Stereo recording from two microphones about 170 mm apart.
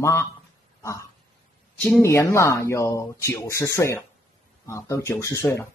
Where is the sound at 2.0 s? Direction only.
15° left (ahead or behind).